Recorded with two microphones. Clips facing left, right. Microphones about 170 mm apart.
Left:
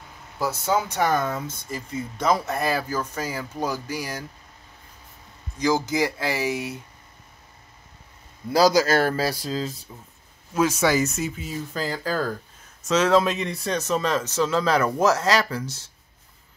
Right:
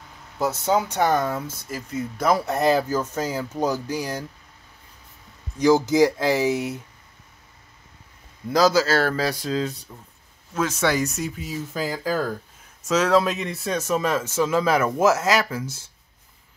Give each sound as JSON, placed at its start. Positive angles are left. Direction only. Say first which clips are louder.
{"t": 0.4, "sound": "speech", "louder": "right 2 dB", "side_deg": -20}
{"t": 1.3, "sound": "speech", "louder": "right 1 dB", "side_deg": -5}
{"t": 2.4, "sound": "speech", "louder": "right 5 dB", "side_deg": -20}
{"t": 5.9, "sound": "speech", "louder": "right 6 dB", "side_deg": 10}
{"t": 8.5, "sound": "speech", "louder": "even", "side_deg": 10}
{"t": 9.3, "sound": "speech", "louder": "right 3 dB", "side_deg": 0}